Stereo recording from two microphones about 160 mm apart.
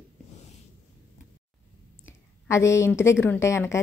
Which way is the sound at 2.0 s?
15° left (ahead or behind).